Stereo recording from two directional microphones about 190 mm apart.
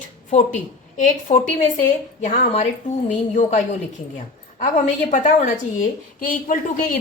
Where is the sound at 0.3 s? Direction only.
40° left (ahead or behind).